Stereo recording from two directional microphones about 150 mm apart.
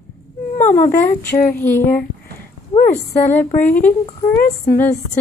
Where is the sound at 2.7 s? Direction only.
60° left (ahead or behind).